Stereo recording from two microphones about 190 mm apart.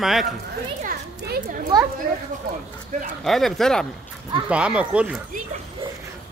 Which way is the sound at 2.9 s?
40° right (ahead or behind).